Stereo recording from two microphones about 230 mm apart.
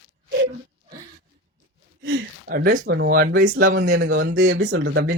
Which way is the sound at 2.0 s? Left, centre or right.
Right.